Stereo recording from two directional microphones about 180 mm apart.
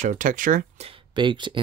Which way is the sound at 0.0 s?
45° right (ahead or behind).